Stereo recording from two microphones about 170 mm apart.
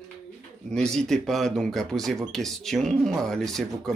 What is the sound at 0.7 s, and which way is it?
Speech, 5° left (ahead or behind).